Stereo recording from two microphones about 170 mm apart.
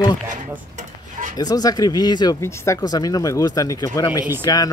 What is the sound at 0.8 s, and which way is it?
Dishes, 50° right (ahead or behind).